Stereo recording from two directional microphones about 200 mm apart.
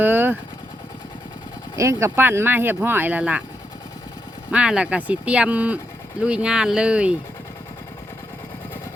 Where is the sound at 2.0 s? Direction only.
10° right (ahead or behind).